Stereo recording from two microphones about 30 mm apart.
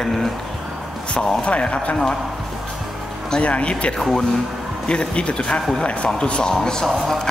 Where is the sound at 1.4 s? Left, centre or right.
Left.